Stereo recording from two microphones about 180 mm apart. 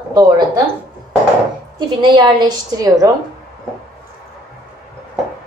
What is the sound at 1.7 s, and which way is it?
A woman's voice, 25° right (ahead or behind).